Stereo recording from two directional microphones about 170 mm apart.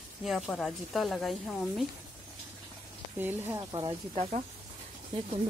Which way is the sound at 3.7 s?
25° right (ahead or behind).